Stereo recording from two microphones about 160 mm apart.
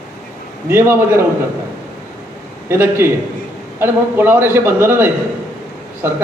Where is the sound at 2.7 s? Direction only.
15° right (ahead or behind).